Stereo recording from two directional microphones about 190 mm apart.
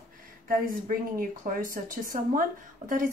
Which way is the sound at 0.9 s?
45° right (ahead or behind).